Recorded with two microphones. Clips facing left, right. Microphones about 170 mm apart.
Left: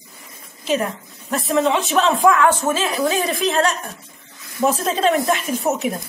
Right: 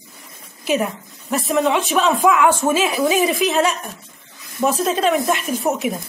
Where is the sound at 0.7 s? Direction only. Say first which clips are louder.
Right 1 dB; 5° right (ahead or behind).